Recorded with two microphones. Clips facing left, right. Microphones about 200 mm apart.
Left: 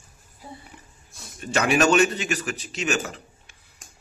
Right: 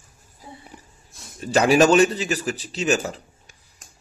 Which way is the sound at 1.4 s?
35° right (ahead or behind).